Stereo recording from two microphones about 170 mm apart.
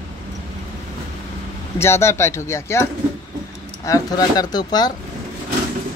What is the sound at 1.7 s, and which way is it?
Speech, 15° left (ahead or behind).